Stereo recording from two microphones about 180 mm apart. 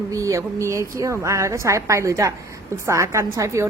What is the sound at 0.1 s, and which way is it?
A woman's voice, 15° right (ahead or behind).